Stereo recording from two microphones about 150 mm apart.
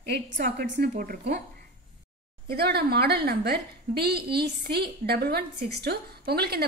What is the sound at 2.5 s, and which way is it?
A woman's voice, 90° right.